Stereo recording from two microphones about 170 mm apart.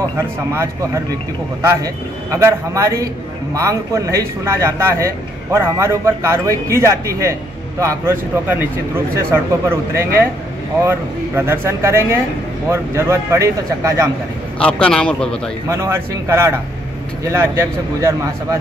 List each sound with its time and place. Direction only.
1.6 s a man's voice: 15° right (ahead or behind)
14.6 s a man's voice: 5° left (ahead or behind)
15.7 s speech: 15° right (ahead or behind)